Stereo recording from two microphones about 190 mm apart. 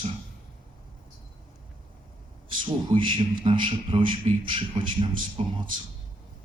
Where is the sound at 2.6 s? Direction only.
25° right (ahead or behind).